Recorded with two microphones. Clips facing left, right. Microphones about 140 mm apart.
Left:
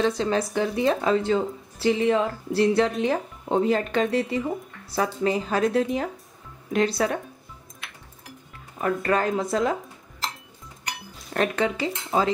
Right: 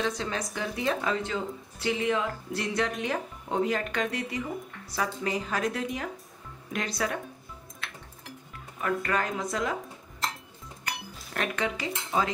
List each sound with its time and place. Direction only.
0.0 s speech: 30° left (ahead or behind)
7.8 s music: 15° left (ahead or behind)
8.8 s speech: 35° left (ahead or behind)
11.3 s speech: 30° left (ahead or behind)